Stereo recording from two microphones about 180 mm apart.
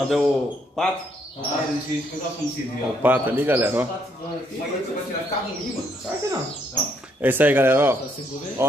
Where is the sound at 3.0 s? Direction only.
10° right (ahead or behind).